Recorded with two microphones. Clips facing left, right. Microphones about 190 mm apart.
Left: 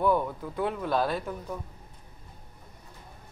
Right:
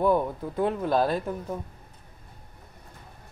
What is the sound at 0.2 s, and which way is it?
Speech, 30° right (ahead or behind).